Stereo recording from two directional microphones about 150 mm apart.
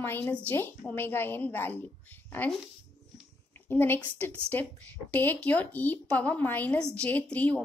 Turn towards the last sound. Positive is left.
turn(degrees=10)  # may be behind; listen again after turning